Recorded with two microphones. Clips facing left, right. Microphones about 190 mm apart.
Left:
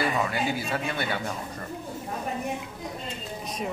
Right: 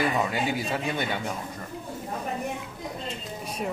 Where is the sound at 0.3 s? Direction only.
20° right (ahead or behind).